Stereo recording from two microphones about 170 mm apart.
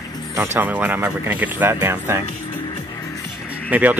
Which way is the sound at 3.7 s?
10° right (ahead or behind).